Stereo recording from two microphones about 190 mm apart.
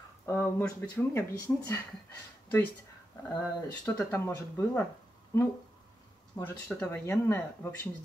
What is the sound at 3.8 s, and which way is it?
Speech, 5° left (ahead or behind).